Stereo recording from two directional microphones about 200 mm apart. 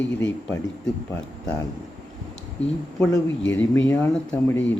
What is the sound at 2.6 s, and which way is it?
Speech, 65° left (ahead or behind).